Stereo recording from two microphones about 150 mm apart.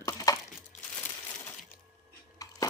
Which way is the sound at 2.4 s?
25° left (ahead or behind).